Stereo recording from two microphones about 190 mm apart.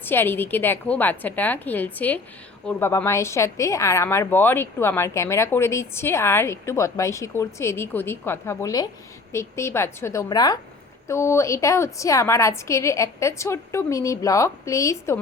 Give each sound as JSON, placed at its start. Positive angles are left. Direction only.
{"t": 0.0, "sound": "a woman's voice", "side_deg": 10}